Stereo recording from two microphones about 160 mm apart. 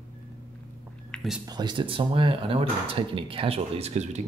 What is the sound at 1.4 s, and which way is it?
Speech, 25° right (ahead or behind).